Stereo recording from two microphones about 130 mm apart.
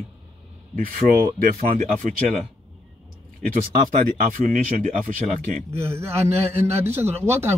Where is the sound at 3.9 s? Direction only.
85° right.